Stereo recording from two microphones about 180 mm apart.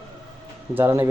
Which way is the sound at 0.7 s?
15° right (ahead or behind).